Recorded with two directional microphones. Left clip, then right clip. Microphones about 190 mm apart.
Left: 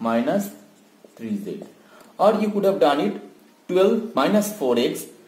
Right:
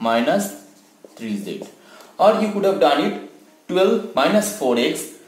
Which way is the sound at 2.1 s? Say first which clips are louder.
Right 3 dB; 40° left (ahead or behind).